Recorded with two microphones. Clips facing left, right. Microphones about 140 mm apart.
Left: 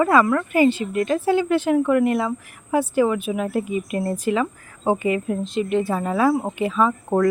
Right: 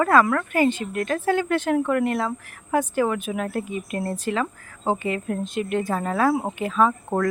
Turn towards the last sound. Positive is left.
turn(degrees=0)  # may be behind; listen again after turning